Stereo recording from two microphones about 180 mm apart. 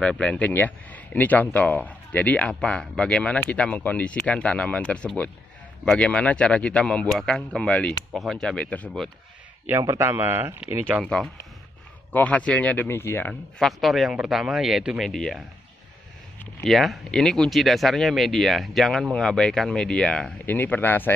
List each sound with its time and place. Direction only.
0.0 s speech: 5° left (ahead or behind)
9.7 s speech: 15° right (ahead or behind)
12.1 s speech: 10° left (ahead or behind)
13.3 s speech: centre (ahead or behind)